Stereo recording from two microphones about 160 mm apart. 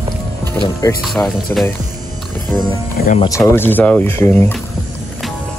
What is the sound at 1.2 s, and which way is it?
Speech, 15° left (ahead or behind).